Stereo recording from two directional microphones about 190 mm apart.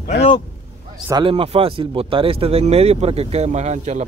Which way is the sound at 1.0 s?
20° right (ahead or behind).